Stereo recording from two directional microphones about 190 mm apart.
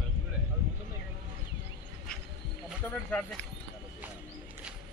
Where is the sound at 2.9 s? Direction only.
5° left (ahead or behind).